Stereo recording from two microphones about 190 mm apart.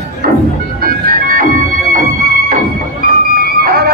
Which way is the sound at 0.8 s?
50° right (ahead or behind).